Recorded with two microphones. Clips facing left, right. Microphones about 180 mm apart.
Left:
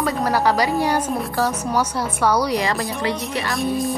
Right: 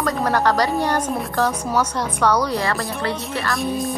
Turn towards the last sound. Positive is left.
turn(degrees=0)  # may be behind; listen again after turning